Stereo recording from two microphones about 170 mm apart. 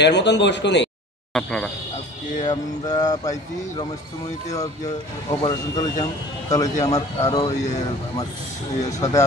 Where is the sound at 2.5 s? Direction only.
25° left (ahead or behind).